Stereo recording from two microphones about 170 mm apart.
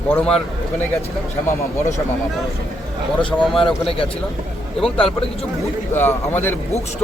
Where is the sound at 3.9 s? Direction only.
35° left (ahead or behind).